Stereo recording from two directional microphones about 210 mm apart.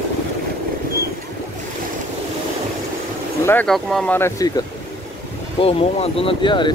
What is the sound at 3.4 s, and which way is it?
Speech, 10° left (ahead or behind).